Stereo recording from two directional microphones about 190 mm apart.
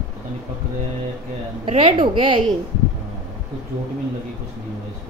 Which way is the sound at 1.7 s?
30° right (ahead or behind).